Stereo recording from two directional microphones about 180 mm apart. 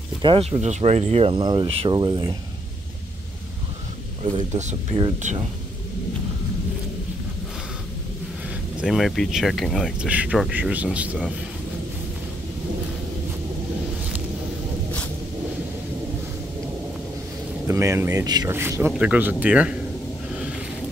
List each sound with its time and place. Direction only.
0.2 s speech: 30° right (ahead or behind)
4.6 s speech: 35° right (ahead or behind)
8.8 s speech: centre (ahead or behind)
17.6 s speech: 15° right (ahead or behind)